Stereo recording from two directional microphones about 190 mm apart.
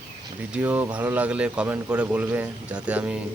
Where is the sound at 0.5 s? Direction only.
10° right (ahead or behind).